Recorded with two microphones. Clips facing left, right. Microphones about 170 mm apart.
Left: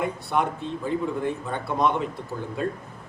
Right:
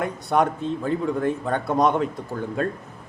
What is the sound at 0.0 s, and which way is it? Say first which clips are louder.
Speech: right 3 dB; 45° right (ahead or behind).